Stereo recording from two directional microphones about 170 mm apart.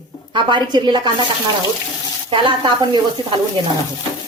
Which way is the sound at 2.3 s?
30° right (ahead or behind).